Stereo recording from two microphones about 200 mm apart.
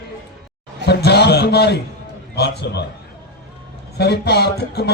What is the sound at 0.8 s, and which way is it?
A man's voice, 55° left (ahead or behind).